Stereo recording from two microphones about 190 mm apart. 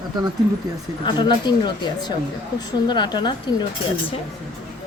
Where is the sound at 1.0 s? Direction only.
25° left (ahead or behind).